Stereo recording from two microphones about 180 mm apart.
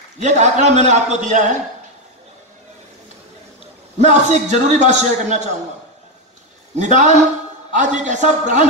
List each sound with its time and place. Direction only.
0.2 s a man's voice: 40° right (ahead or behind)
4.0 s a man's voice: 40° right (ahead or behind)
6.8 s a man's voice: 40° right (ahead or behind)